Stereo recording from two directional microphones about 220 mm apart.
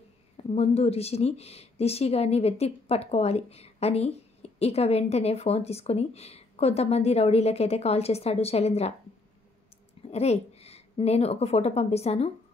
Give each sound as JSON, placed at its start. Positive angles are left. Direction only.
{"t": 0.4, "sound": "speech", "side_deg": 25}
{"t": 10.0, "sound": "a woman's voice", "side_deg": 30}